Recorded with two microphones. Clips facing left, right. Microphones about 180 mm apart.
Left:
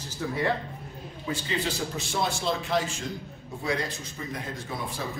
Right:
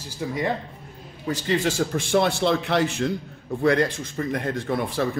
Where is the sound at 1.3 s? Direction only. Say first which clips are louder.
Right 7 dB; 45° right (ahead or behind).